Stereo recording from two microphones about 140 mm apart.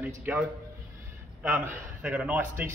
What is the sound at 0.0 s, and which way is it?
A man's voice, 10° right (ahead or behind).